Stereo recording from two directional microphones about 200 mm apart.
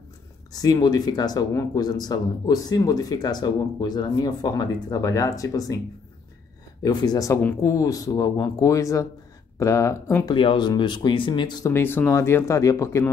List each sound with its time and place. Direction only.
0.5 s speech: 20° left (ahead or behind)
6.8 s speech: 20° left (ahead or behind)
10.3 s speech: 25° left (ahead or behind)